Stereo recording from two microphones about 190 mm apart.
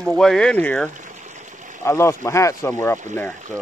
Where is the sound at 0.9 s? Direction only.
40° right (ahead or behind).